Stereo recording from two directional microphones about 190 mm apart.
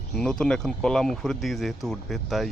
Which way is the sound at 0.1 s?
5° left (ahead or behind).